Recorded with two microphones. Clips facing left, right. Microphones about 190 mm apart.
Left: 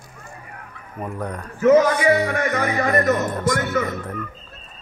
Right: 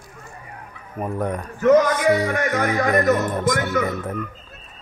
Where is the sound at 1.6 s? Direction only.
5° left (ahead or behind).